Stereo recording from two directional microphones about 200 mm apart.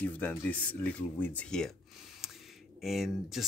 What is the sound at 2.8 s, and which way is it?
Speech, centre (ahead or behind).